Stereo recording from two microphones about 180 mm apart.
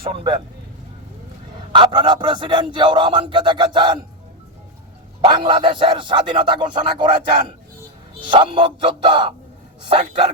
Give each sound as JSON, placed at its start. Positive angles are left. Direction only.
{"t": 0.0, "sound": "speech", "side_deg": -30}
{"t": 1.7, "sound": "speech", "side_deg": -25}
{"t": 5.2, "sound": "speech", "side_deg": -30}